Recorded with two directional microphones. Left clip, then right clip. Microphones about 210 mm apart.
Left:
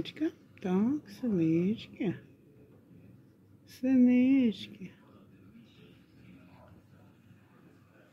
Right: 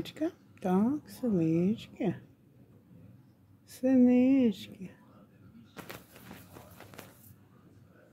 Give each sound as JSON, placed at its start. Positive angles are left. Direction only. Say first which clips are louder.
{"t": 0.0, "sound": "speech", "louder": "even", "side_deg": -15}
{"t": 3.7, "sound": "speech", "louder": "right 1 dB", "side_deg": -20}